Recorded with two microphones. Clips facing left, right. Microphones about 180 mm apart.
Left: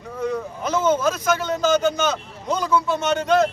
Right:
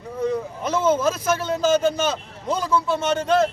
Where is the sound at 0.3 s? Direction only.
30° right (ahead or behind).